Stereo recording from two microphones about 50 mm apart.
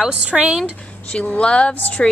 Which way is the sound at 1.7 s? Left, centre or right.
Left.